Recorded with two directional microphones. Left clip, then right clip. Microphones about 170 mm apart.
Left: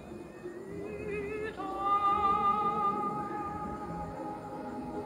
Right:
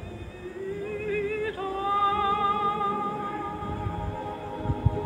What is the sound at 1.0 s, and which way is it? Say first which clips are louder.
Music: right 8 dB; 30° right (ahead or behind).